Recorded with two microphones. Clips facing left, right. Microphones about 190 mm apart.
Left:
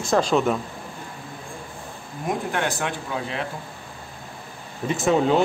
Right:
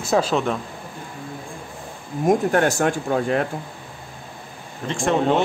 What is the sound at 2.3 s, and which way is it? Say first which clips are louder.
Speech: right 8 dB; 45° right (ahead or behind).